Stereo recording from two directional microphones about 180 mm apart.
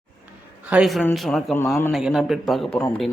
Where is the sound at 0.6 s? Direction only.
5° right (ahead or behind).